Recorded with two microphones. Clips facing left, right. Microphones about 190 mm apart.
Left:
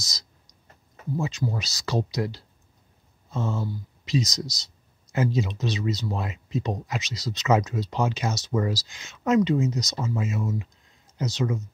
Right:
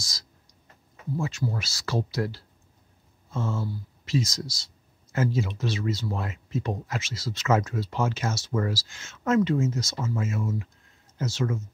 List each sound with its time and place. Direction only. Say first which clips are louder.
0.0 s clicking: left 1 dB; 20° left (ahead or behind)
1.1 s speech: left 1 dB; 20° left (ahead or behind)